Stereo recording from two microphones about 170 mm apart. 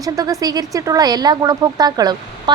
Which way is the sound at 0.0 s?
20° right (ahead or behind).